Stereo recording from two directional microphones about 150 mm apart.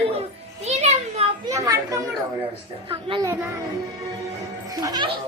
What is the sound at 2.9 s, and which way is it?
Speech, 35° right (ahead or behind).